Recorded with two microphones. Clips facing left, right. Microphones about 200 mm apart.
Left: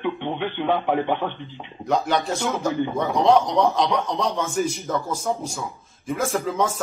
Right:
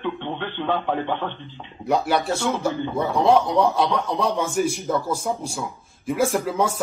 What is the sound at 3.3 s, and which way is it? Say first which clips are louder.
Speech: even; 5° right (ahead or behind).